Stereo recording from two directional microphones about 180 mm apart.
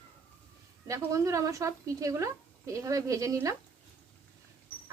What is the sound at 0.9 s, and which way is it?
A woman's voice, 15° right (ahead or behind).